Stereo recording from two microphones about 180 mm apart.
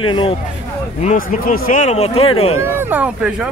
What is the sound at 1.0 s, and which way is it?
Speech, 50° left (ahead or behind).